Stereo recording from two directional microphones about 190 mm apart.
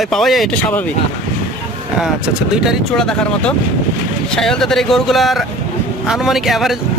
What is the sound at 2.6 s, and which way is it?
Speech, 5° left (ahead or behind).